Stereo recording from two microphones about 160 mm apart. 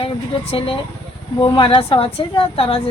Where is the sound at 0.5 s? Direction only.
35° left (ahead or behind).